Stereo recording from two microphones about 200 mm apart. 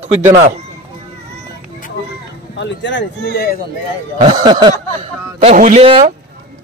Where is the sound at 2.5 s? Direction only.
65° left (ahead or behind).